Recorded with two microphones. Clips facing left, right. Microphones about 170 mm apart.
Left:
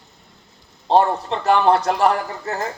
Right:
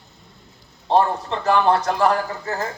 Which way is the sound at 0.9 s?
30° left (ahead or behind).